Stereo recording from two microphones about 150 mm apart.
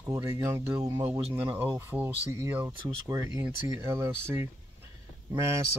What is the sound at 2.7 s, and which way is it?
Speech, 25° right (ahead or behind).